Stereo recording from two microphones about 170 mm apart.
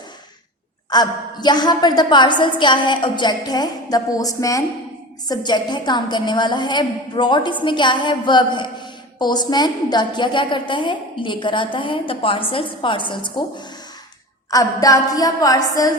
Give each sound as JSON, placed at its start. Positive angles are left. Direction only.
{"t": 0.9, "sound": "a woman's voice", "side_deg": 25}